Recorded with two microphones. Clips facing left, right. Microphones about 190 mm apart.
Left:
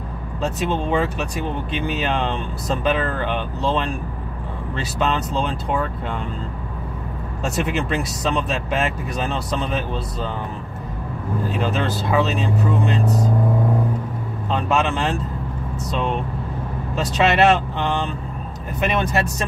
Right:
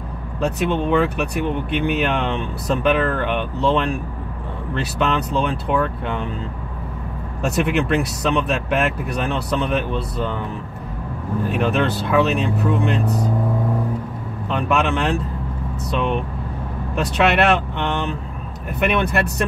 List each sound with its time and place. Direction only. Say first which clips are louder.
0.4 s speech: right 3 dB; 60° right (ahead or behind)
7.4 s speech: right 4 dB; 60° right (ahead or behind)
11.4 s speech: right 4 dB; 60° right (ahead or behind)
14.5 s speech: right 1 dB; 60° right (ahead or behind)
16.9 s speech: right 1 dB; 60° right (ahead or behind)